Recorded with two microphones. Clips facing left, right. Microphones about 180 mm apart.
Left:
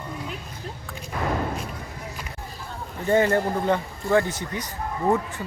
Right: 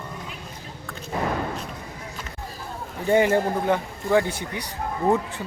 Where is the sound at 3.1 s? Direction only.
15° right (ahead or behind).